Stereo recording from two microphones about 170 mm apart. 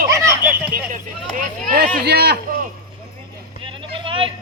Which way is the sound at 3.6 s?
30° right (ahead or behind).